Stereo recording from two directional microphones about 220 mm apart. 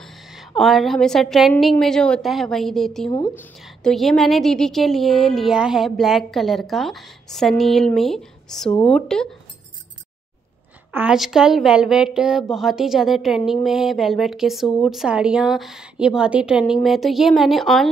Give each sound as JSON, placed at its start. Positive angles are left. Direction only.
{"t": 0.0, "sound": "speech", "side_deg": 0}
{"t": 3.1, "sound": "speech", "side_deg": 20}
{"t": 3.5, "sound": "speech", "side_deg": 0}
{"t": 10.9, "sound": "speech", "side_deg": -5}